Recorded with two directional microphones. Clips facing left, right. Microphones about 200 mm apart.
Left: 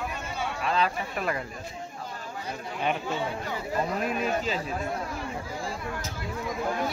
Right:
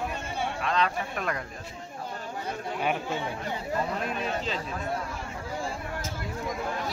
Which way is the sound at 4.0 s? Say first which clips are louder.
Left 3 dB; 5° left (ahead or behind).